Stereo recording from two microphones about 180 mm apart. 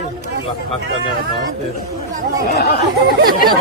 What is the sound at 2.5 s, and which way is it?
Speech, 65° left (ahead or behind).